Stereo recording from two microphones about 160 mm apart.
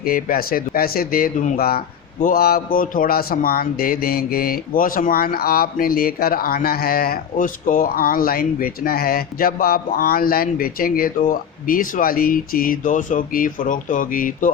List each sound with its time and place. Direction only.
0.0 s speech: 65° left (ahead or behind)
2.2 s a man's voice: 70° left (ahead or behind)